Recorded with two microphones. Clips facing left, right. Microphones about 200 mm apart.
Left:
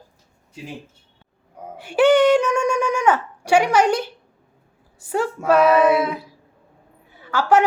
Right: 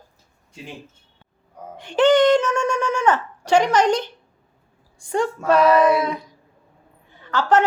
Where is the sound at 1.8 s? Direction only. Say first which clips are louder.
Left 1 dB; 10° left (ahead or behind).